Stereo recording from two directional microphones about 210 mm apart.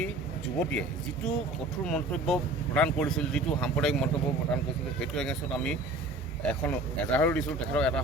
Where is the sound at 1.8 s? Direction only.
5° left (ahead or behind).